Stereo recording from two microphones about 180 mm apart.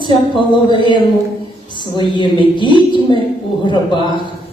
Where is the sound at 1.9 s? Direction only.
25° left (ahead or behind).